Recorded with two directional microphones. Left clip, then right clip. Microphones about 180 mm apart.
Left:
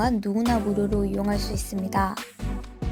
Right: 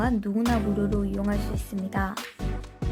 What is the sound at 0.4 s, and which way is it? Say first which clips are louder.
Music: left 2 dB; centre (ahead or behind).